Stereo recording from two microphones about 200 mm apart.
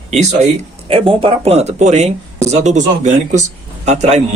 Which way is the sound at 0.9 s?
25° right (ahead or behind).